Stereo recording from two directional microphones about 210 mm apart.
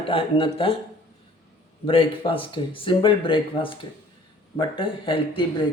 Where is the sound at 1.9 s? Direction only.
25° left (ahead or behind).